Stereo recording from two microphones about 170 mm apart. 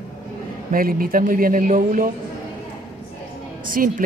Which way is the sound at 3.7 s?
55° right (ahead or behind).